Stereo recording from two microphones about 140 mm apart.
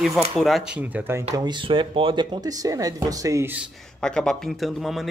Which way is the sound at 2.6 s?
25° right (ahead or behind).